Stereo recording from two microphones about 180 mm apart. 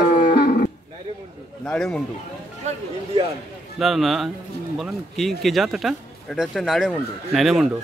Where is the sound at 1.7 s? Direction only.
5° left (ahead or behind).